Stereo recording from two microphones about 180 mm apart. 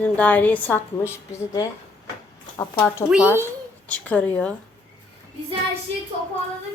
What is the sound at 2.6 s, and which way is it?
A woman's voice, 15° left (ahead or behind).